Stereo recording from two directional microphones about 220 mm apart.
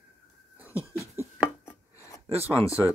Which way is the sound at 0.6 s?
5° right (ahead or behind).